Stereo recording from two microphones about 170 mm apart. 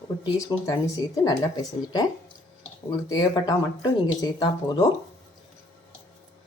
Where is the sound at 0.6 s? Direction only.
20° left (ahead or behind).